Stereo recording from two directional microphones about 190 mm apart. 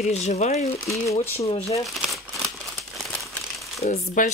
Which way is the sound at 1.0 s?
10° left (ahead or behind).